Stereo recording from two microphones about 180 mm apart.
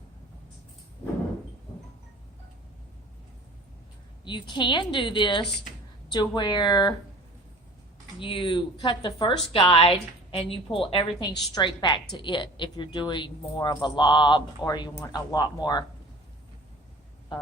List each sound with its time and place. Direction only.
4.2 s a woman's voice: 25° left (ahead or behind)
8.2 s a woman's voice: 30° left (ahead or behind)
17.3 s a sound: 25° left (ahead or behind)